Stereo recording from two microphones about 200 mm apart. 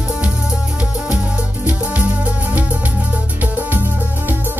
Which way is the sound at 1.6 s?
5° right (ahead or behind).